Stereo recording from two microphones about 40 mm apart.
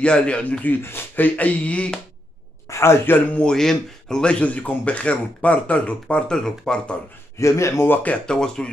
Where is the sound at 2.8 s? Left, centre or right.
Left.